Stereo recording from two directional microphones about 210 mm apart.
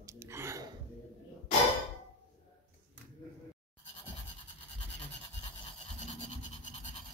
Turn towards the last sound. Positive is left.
turn(degrees=30)  # may be behind; listen again after turning